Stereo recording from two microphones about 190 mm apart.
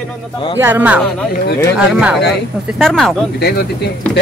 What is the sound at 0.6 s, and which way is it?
Speech, 10° right (ahead or behind).